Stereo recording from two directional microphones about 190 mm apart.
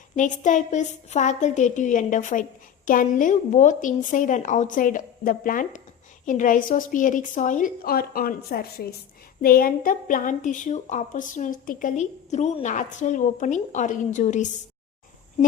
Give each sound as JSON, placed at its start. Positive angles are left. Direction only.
{"t": 0.2, "sound": "a woman's voice", "side_deg": 40}